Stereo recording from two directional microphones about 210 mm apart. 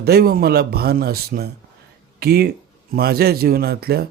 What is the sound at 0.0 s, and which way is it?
Speech, 50° right (ahead or behind).